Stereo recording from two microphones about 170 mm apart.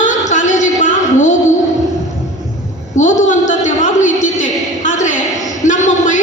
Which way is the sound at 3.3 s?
45° left (ahead or behind).